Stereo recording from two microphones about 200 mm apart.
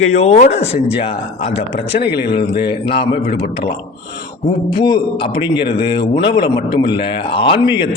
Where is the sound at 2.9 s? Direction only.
30° left (ahead or behind).